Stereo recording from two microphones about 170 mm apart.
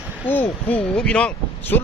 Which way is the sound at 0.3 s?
10° left (ahead or behind).